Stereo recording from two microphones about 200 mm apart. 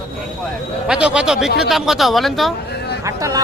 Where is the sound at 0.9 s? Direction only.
5° right (ahead or behind).